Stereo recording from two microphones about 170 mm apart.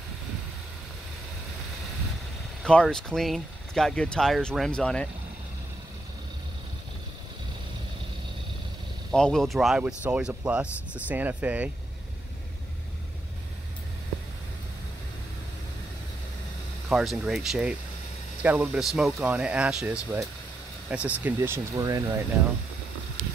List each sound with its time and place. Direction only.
2.6 s speech: 5° left (ahead or behind)
9.1 s speech: 5° left (ahead or behind)
16.9 s speech: centre (ahead or behind); by 22.1 s 20° right (ahead or behind)